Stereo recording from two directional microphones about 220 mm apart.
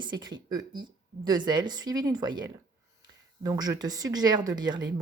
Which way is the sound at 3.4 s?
15° right (ahead or behind).